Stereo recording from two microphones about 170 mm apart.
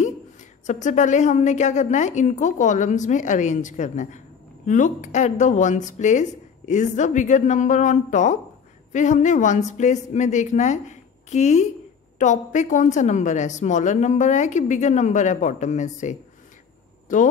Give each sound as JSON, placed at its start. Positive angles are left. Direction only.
{"t": 0.0, "sound": "speech", "side_deg": 45}